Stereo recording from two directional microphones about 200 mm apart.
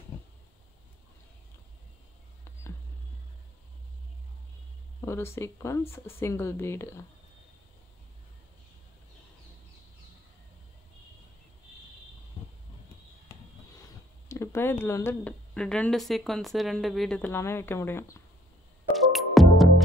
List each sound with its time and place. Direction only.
5.0 s speech: 15° left (ahead or behind)
14.3 s speech: 15° left (ahead or behind)
18.9 s music: centre (ahead or behind)